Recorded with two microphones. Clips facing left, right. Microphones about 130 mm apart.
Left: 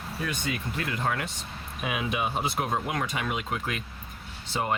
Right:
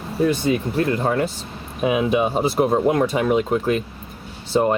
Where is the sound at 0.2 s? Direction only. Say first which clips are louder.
Right 14 dB; 35° right (ahead or behind).